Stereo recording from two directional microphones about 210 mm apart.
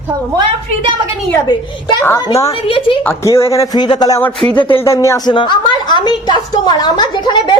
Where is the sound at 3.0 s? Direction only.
10° left (ahead or behind).